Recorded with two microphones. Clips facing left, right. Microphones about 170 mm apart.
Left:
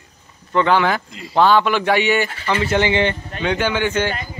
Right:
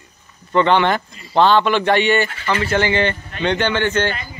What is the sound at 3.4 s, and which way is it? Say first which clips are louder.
Speech: right 2 dB; 5° left (ahead or behind).